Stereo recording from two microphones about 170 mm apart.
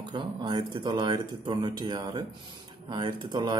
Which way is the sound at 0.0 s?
25° right (ahead or behind).